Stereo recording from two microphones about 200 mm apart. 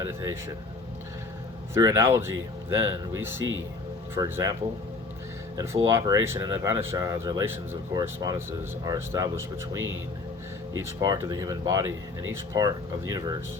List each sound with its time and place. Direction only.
0.0 s speech: 15° right (ahead or behind)
1.7 s speech: 15° right (ahead or behind)
5.5 s speech: 15° right (ahead or behind)
10.8 s speech: 15° right (ahead or behind)